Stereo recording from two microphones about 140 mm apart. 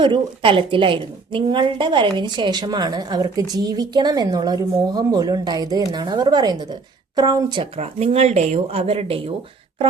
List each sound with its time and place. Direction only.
0.0 s a woman's voice: 35° right (ahead or behind)
7.8 s speech: 50° right (ahead or behind)